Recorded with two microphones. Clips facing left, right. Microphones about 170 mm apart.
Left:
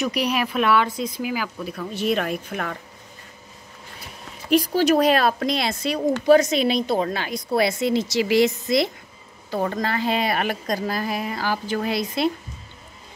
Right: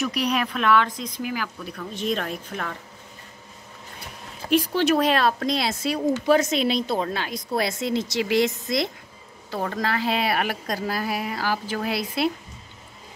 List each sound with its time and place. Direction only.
0.0 s speech: centre (ahead or behind)
2.5 s speech: 55° left (ahead or behind)
4.4 s a sound: 40° right (ahead or behind)
4.7 s speech: 40° left (ahead or behind)
5.4 s a woman's voice: centre (ahead or behind)